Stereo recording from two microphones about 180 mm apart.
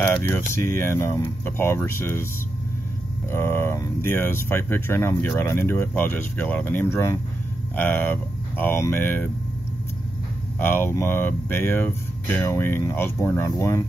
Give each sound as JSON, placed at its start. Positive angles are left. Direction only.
{"t": 0.0, "sound": "speech", "side_deg": 15}
{"t": 3.3, "sound": "speech", "side_deg": 15}
{"t": 10.6, "sound": "speech", "side_deg": 10}